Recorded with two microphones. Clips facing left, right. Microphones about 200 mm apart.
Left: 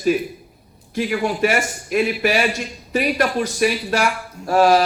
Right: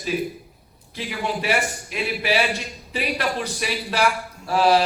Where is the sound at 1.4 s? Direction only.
50° left (ahead or behind).